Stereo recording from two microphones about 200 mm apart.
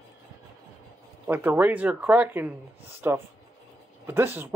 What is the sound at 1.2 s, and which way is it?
Speech, 10° right (ahead or behind).